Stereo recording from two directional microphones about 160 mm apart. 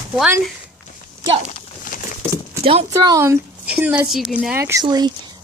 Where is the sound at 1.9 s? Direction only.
55° left (ahead or behind).